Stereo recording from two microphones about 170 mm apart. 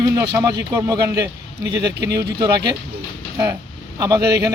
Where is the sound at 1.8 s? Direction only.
80° right.